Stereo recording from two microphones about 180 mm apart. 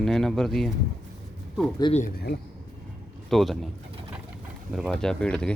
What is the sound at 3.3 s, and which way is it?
Speech, centre (ahead or behind).